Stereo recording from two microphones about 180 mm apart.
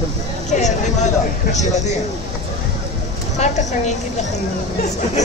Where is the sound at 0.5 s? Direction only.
40° left (ahead or behind).